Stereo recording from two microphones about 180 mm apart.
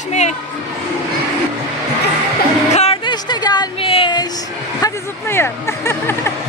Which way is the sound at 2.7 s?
35° left (ahead or behind).